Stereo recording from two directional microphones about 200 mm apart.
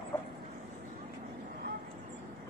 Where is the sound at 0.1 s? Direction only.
10° left (ahead or behind).